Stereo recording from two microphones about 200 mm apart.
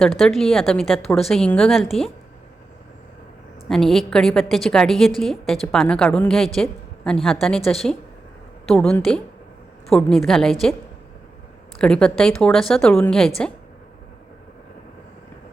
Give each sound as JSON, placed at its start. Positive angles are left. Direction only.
{"t": 0.2, "sound": "a woman's voice", "side_deg": 0}
{"t": 3.7, "sound": "a woman's voice", "side_deg": 0}
{"t": 11.8, "sound": "a woman's voice", "side_deg": 5}